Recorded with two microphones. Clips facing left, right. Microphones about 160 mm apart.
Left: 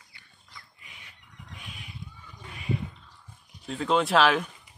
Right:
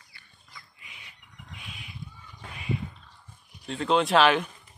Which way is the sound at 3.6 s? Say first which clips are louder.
Right 1 dB; centre (ahead or behind).